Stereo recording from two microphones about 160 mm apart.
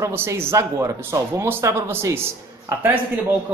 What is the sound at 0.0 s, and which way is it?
A man's voice, 15° right (ahead or behind).